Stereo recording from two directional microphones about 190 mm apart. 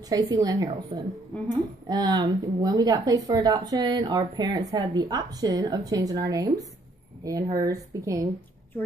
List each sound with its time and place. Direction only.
0.1 s a woman's voice: 20° right (ahead or behind)